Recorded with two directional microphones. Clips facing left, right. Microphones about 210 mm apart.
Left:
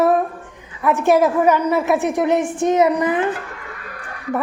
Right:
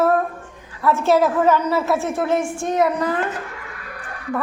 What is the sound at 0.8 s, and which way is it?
A woman's voice, 15° left (ahead or behind).